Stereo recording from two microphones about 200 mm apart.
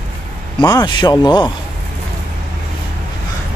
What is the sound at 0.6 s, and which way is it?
Speech, 20° left (ahead or behind).